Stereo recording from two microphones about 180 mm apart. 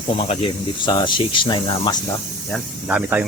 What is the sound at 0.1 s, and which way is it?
Speech, 35° left (ahead or behind).